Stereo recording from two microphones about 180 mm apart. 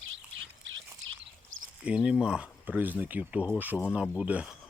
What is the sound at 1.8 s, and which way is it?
Speech, 5° right (ahead or behind).